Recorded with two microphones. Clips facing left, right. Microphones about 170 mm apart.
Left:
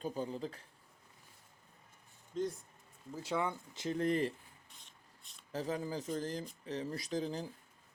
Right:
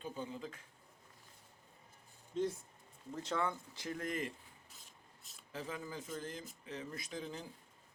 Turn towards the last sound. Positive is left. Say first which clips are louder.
# left 7 dB
turn(degrees=35)  # may be behind; listen again after turning